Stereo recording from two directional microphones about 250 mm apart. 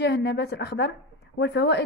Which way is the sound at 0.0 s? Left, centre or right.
Left.